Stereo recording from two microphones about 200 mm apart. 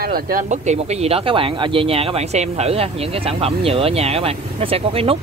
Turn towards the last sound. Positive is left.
turn(degrees=-30)  # may be behind; listen again after turning